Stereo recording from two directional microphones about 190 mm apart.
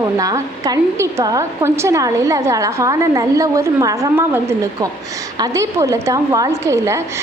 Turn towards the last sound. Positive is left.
turn(degrees=-15)  # may be behind; listen again after turning